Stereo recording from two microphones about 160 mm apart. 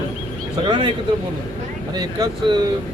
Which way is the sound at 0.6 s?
30° right (ahead or behind).